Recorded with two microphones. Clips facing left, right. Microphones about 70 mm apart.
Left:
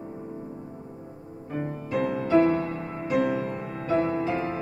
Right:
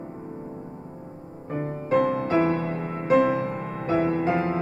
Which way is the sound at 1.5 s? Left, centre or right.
Right.